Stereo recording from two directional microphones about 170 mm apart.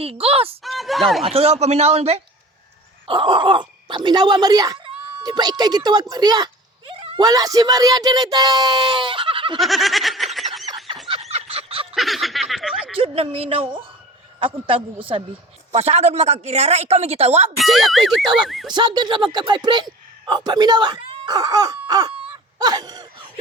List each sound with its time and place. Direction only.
0.0 s a woman's voice: 35° right (ahead or behind)
0.6 s speech: centre (ahead or behind)
1.2 s a woman's voice: 35° right (ahead or behind)
7.0 s a sound: 35° right (ahead or behind)
7.3 s speech: 20° right (ahead or behind)
9.6 s a sound: centre (ahead or behind)
11.1 s a sound: 35° right (ahead or behind)
11.9 s snicker: centre (ahead or behind)
13.0 s a woman's voice: 35° right (ahead or behind)
17.6 s speech: centre (ahead or behind)
18.7 s a man's voice: 25° right (ahead or behind)